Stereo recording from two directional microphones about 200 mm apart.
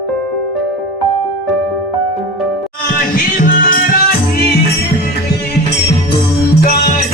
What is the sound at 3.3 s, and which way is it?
Music, 45° left (ahead or behind).